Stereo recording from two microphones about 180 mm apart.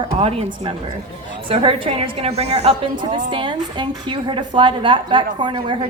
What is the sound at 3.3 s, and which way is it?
A woman's voice, 25° right (ahead or behind).